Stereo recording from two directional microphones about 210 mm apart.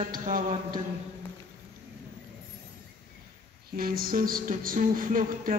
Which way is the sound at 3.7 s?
45° right (ahead or behind).